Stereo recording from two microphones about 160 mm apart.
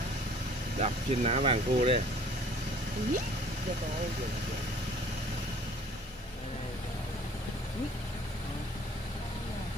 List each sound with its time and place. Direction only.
0.7 s speech: 45° right (ahead or behind)